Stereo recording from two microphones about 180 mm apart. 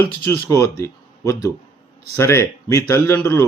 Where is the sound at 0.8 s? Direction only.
15° left (ahead or behind).